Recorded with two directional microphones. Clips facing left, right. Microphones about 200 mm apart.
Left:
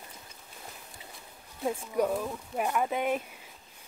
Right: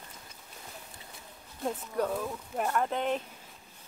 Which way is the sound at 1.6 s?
10° left (ahead or behind).